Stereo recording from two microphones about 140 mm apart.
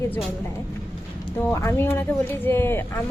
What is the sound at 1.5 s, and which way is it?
Speech, 15° left (ahead or behind).